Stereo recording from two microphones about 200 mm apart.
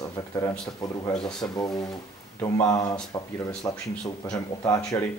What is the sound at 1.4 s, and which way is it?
Speech, 20° left (ahead or behind).